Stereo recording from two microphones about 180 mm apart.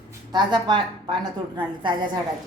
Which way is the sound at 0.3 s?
25° right (ahead or behind).